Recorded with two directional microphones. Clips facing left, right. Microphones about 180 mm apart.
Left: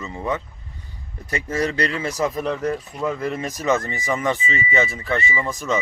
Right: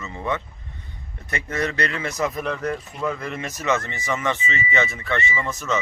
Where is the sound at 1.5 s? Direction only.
30° left (ahead or behind).